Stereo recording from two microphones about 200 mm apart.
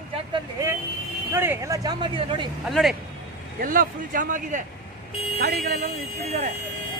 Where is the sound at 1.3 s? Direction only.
10° right (ahead or behind).